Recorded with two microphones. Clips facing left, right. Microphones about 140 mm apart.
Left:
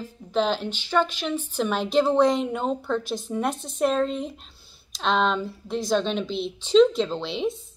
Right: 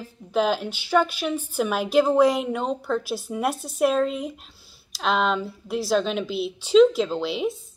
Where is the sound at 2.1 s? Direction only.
5° right (ahead or behind).